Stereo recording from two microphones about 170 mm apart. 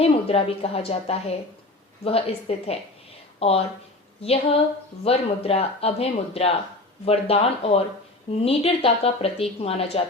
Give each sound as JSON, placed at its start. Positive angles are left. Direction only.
{"t": 0.0, "sound": "speech", "side_deg": 35}